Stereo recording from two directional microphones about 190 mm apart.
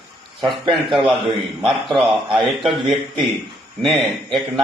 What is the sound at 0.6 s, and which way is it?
Speech, 25° right (ahead or behind).